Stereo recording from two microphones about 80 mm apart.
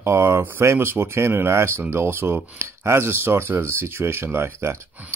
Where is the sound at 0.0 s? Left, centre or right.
Right.